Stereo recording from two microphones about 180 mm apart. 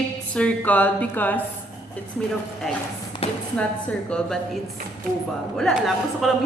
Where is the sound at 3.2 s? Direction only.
35° left (ahead or behind).